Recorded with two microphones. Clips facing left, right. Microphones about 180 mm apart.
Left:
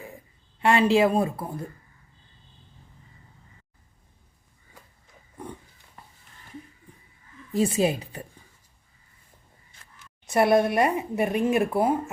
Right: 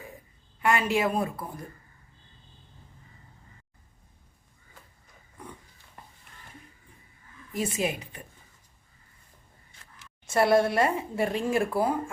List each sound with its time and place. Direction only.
0.6 s speech: 30° left (ahead or behind)
7.5 s a woman's voice: 30° left (ahead or behind)
10.2 s speech: 20° left (ahead or behind)